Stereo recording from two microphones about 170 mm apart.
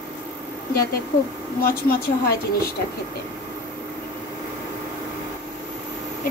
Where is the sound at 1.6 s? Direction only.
60° left (ahead or behind).